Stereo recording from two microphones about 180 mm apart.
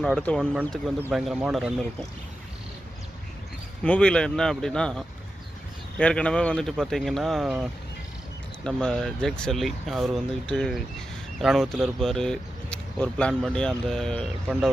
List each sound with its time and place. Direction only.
0.0 s speech: 5° left (ahead or behind)
3.8 s speech: 5° left (ahead or behind)
8.6 s speech: 5° left (ahead or behind)